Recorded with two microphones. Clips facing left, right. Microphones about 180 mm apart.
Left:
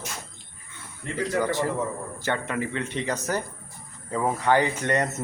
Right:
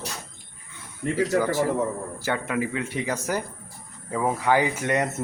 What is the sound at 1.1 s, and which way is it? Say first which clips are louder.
Speech: right 2 dB; 5° right (ahead or behind).